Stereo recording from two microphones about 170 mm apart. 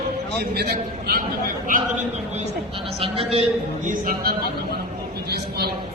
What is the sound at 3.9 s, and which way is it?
Speech, 60° right (ahead or behind).